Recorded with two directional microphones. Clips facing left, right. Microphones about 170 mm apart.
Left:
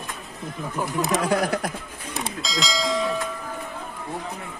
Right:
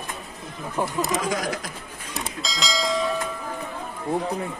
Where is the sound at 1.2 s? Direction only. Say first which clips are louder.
Left 4 dB; 60° left (ahead or behind).